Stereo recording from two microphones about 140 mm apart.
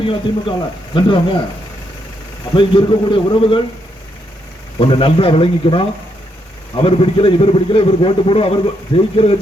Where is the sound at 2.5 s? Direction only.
35° left (ahead or behind).